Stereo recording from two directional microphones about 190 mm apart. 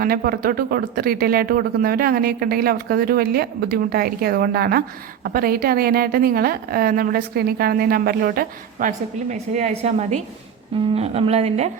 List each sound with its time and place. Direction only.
0.0 s speech: 50° right (ahead or behind)
9.3 s a woman's voice: 40° right (ahead or behind)